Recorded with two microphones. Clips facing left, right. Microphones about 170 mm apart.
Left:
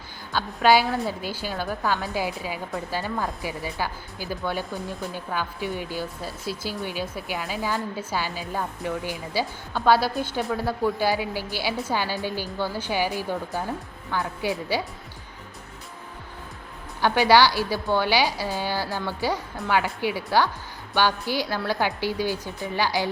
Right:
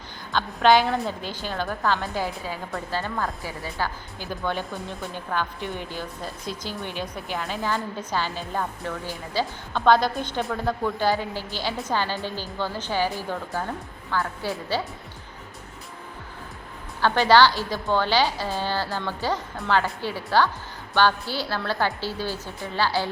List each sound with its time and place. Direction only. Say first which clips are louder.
0.3 s speech: right 1 dB; 5° left (ahead or behind)
17.0 s speech: even; 10° left (ahead or behind)